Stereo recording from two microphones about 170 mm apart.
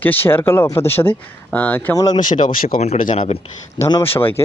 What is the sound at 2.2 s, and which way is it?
Speech, 50° left (ahead or behind).